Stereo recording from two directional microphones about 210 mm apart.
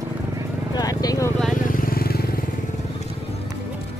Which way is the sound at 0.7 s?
20° left (ahead or behind).